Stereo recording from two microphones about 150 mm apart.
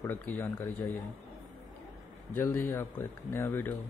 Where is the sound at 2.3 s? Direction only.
15° left (ahead or behind).